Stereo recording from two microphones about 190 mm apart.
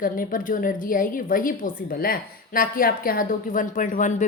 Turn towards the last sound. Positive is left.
turn(degrees=40)  # may be behind; listen again after turning